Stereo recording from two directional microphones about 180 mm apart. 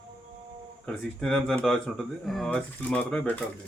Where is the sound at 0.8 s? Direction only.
5° left (ahead or behind).